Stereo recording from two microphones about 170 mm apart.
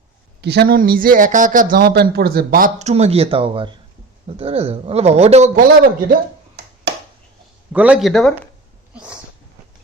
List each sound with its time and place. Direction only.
0.4 s speech: 75° right (ahead or behind); by 5.5 s 40° right (ahead or behind)
5.5 s a man's voice: 55° right (ahead or behind)
6.9 s a sound: 90° right
7.7 s speech: 5° right (ahead or behind)